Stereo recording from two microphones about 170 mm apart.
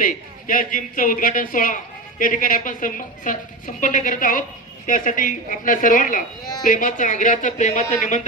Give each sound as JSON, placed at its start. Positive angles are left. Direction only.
{"t": 0.0, "sound": "speech", "side_deg": 55}